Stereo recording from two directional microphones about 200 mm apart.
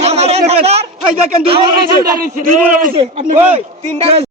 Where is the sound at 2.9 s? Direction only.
30° right (ahead or behind).